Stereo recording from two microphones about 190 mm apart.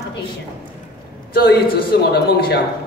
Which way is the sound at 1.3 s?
55° left (ahead or behind).